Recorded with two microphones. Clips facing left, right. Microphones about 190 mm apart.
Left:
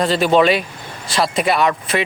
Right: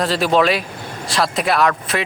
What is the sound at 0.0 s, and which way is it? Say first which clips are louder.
Speech: left 2 dB; centre (ahead or behind).